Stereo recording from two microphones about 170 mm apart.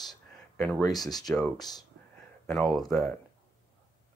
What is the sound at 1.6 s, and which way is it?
Speech, 25° left (ahead or behind).